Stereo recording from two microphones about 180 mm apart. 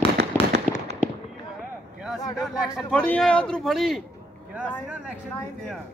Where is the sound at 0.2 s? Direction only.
65° right (ahead or behind).